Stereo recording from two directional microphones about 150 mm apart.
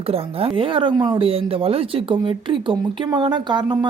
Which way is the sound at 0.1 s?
40° right (ahead or behind).